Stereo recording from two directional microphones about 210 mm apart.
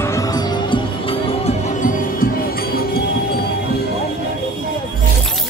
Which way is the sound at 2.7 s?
45° left (ahead or behind).